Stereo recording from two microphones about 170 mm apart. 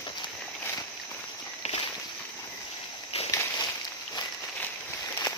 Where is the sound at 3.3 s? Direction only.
20° left (ahead or behind).